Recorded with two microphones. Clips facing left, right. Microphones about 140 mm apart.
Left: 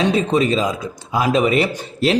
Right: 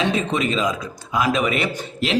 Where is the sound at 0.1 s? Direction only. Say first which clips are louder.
Left 5 dB; 35° left (ahead or behind).